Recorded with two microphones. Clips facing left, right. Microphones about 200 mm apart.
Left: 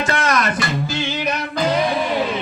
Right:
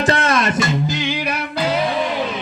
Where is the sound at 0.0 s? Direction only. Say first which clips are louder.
Right 2 dB; 30° right (ahead or behind); by 1.7 s 10° right (ahead or behind).